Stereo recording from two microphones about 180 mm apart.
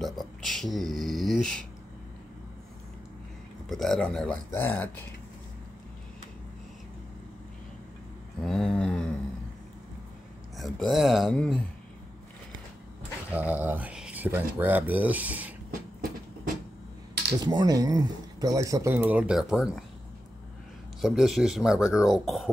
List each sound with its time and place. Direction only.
0.0 s a sound: centre (ahead or behind)
3.6 s speech: centre (ahead or behind)
8.5 s a sound: centre (ahead or behind)
10.6 s speech: centre (ahead or behind)
13.3 s speech: 10° right (ahead or behind)
17.5 s speech: 20° right (ahead or behind); by 19.8 s centre (ahead or behind)
21.0 s speech: centre (ahead or behind)